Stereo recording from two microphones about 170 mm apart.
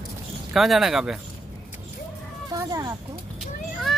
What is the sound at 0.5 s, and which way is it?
Speech, centre (ahead or behind).